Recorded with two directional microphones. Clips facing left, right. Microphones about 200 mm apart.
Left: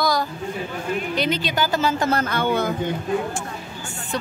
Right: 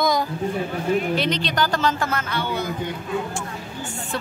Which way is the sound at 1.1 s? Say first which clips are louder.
Even; 5° left (ahead or behind).